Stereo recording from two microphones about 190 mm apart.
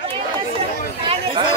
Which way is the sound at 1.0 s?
30° right (ahead or behind).